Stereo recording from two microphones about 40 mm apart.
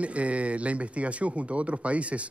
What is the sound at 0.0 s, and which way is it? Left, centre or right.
Speech, right.